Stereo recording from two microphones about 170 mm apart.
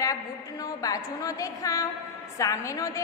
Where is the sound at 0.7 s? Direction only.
20° left (ahead or behind).